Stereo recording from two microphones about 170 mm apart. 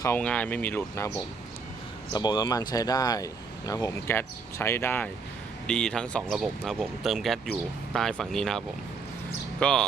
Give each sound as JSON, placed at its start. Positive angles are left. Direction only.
{"t": 0.0, "sound": "speech", "side_deg": 10}
{"t": 2.1, "sound": "speech", "side_deg": 25}